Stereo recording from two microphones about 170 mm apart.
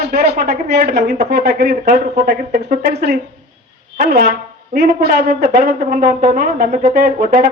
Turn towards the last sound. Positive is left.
turn(degrees=-55)  # may be behind; listen again after turning